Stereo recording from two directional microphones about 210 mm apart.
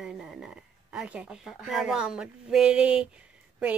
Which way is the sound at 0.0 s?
Centre (ahead or behind).